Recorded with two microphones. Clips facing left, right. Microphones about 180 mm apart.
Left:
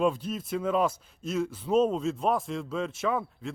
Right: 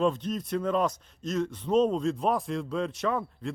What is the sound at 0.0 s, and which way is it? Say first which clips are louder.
A man's voice: even; 10° left (ahead or behind).